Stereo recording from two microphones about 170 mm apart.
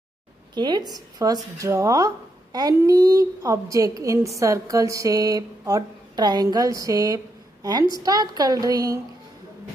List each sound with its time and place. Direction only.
0.6 s a woman's voice: 25° right (ahead or behind)